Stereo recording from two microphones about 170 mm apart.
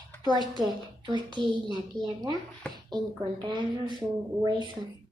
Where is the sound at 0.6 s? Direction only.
25° right (ahead or behind).